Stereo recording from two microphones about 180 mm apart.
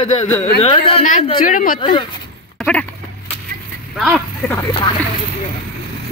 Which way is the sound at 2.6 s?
10° left (ahead or behind).